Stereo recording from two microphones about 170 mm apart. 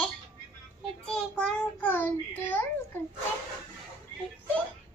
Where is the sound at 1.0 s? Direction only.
5° left (ahead or behind).